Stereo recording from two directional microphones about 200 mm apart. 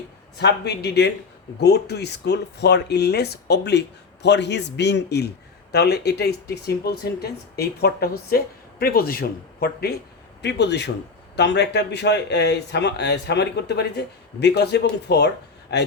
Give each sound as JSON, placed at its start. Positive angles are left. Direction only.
{"t": 0.3, "sound": "speech", "side_deg": 55}